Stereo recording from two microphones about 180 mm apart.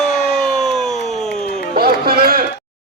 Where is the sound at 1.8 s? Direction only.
55° right (ahead or behind).